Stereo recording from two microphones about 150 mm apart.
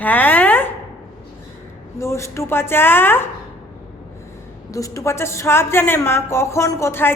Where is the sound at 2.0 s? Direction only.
20° left (ahead or behind).